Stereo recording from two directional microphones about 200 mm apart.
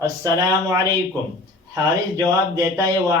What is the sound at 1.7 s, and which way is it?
A man's voice, 15° right (ahead or behind).